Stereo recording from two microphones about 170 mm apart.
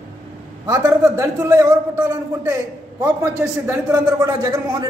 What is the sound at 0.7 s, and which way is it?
A man's voice, 20° right (ahead or behind).